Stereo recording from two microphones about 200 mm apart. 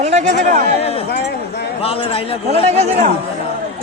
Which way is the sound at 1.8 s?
30° left (ahead or behind).